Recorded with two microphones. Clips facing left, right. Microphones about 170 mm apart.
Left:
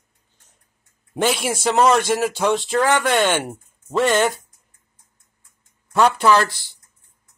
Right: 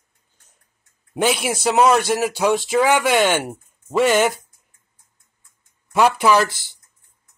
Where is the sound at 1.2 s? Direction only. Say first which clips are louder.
Right 1 dB; 5° right (ahead or behind).